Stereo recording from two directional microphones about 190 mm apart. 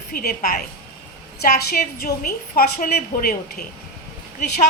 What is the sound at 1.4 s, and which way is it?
A woman's voice, 55° left (ahead or behind).